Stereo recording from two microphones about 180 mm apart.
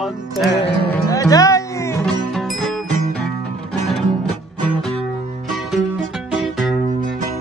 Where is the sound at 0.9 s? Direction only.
20° left (ahead or behind).